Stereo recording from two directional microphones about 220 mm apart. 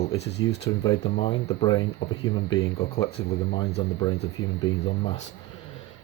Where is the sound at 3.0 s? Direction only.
25° left (ahead or behind).